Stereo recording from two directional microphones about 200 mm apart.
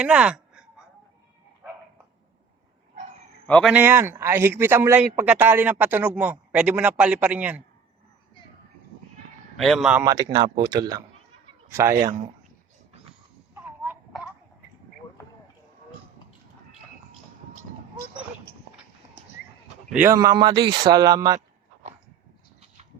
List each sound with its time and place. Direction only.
0.0 s a sound: 5° right (ahead or behind)
3.4 s a man's voice: 5° left (ahead or behind)
3.7 s speech: 10° right (ahead or behind)
9.6 s speech: centre (ahead or behind)
10.0 s speech: 15° right (ahead or behind)
19.9 s speech: 5° right (ahead or behind)
20.1 s speech: 20° right (ahead or behind)